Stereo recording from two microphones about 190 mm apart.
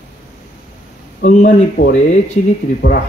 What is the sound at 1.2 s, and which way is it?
Speech, 40° left (ahead or behind).